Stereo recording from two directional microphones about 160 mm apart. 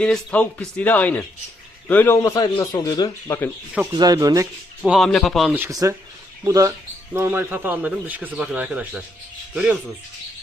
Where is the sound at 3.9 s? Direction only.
25° right (ahead or behind).